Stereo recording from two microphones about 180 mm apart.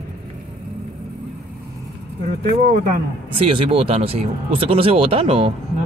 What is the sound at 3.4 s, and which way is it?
Speech, 30° right (ahead or behind).